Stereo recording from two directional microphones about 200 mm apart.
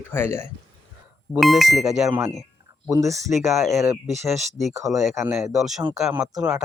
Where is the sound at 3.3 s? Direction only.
Centre (ahead or behind).